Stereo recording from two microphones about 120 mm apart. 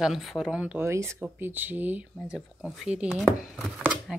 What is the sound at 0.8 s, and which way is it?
Speech, 25° right (ahead or behind).